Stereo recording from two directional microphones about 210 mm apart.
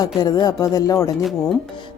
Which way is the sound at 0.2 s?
20° left (ahead or behind).